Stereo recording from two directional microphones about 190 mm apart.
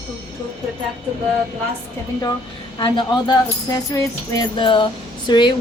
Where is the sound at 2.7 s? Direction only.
25° left (ahead or behind).